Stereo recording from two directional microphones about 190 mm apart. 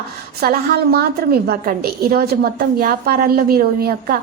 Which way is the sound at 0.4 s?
50° right (ahead or behind).